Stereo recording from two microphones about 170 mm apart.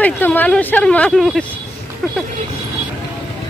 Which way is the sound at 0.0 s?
10° left (ahead or behind).